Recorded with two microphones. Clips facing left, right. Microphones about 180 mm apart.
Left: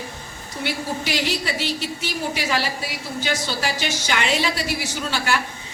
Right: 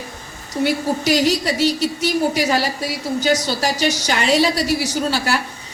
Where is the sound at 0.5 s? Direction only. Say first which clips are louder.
Right 8 dB; 40° right (ahead or behind).